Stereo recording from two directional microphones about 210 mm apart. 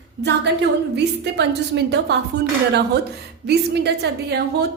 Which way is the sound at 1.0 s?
55° right (ahead or behind).